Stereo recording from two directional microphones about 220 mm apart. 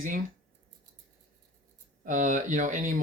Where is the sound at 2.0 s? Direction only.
35° right (ahead or behind).